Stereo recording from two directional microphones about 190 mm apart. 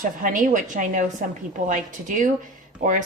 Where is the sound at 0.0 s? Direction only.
45° right (ahead or behind).